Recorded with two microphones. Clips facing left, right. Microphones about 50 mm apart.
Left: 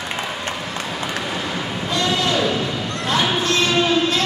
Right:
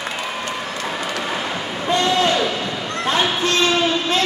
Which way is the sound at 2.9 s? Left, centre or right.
Right.